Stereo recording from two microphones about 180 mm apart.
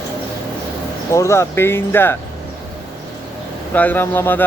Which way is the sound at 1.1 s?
15° left (ahead or behind).